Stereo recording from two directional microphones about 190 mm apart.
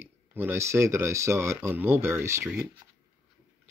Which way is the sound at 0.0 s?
10° right (ahead or behind).